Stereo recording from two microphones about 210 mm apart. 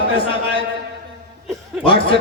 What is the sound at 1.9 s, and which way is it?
Speech, 25° left (ahead or behind).